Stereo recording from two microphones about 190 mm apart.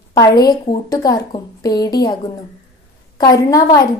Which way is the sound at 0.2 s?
20° left (ahead or behind).